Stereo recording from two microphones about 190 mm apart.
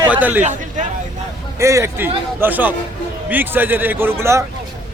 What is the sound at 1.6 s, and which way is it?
A man's voice, 15° right (ahead or behind).